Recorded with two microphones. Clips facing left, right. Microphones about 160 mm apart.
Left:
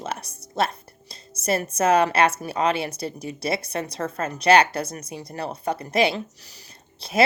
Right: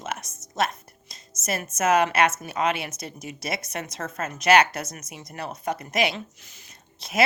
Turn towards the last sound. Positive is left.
turn(degrees=30)  # may be behind; listen again after turning